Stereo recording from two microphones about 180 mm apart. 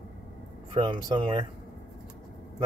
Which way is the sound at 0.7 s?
25° right (ahead or behind).